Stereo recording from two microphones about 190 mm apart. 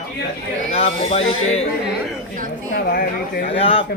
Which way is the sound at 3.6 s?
30° left (ahead or behind).